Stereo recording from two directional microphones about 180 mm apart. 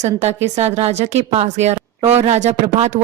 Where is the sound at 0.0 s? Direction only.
40° right (ahead or behind).